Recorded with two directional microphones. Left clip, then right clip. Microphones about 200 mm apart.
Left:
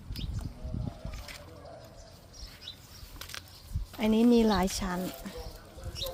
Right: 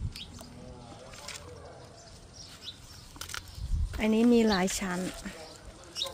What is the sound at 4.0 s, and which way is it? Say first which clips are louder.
Speech: even; 5° left (ahead or behind).